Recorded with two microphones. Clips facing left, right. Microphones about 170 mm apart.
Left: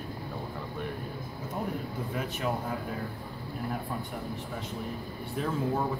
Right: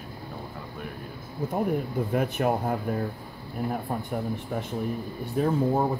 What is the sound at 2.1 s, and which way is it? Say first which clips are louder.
Speech: right 7 dB; 55° right (ahead or behind).